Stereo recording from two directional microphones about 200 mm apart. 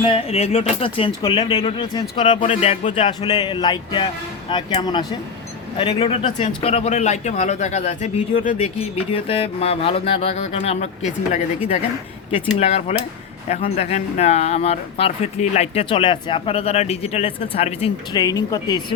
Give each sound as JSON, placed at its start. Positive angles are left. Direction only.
{"t": 0.0, "sound": "speech", "side_deg": 30}